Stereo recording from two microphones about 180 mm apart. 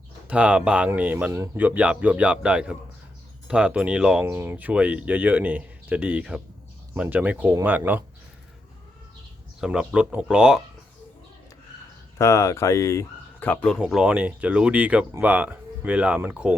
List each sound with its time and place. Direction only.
0.3 s speech: 5° right (ahead or behind)
9.6 s speech: 5° right (ahead or behind)
12.1 s speech: 15° left (ahead or behind)
13.7 s speech: 5° right (ahead or behind)